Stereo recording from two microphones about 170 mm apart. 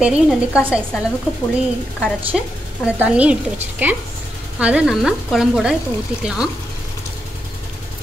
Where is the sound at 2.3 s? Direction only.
Centre (ahead or behind).